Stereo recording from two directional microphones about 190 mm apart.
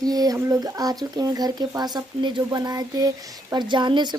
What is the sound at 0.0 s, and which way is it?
Speech, 20° right (ahead or behind).